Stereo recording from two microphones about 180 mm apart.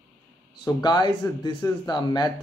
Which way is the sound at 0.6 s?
25° left (ahead or behind).